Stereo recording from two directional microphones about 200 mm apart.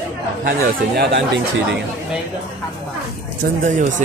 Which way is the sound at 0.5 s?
50° right (ahead or behind).